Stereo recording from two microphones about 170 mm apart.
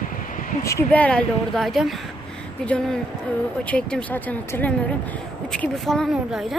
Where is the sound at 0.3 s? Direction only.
50° left (ahead or behind).